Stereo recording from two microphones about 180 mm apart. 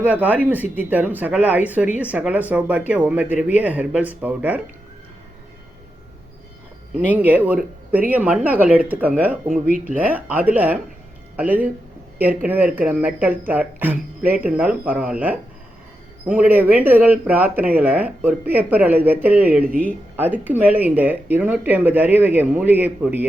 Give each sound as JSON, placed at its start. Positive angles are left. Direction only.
{"t": 0.0, "sound": "speech", "side_deg": -10}
{"t": 7.0, "sound": "speech", "side_deg": -10}
{"t": 9.5, "sound": "speech", "side_deg": -50}
{"t": 9.8, "sound": "speech", "side_deg": -10}